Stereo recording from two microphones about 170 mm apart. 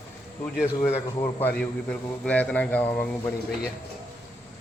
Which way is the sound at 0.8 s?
15° left (ahead or behind).